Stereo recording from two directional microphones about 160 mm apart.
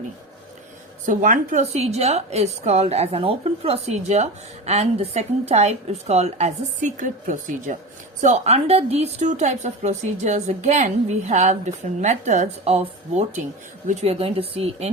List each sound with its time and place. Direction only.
1.0 s a woman's voice: 50° right (ahead or behind)